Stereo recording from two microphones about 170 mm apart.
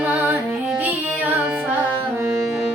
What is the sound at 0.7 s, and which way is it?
Music, 10° right (ahead or behind).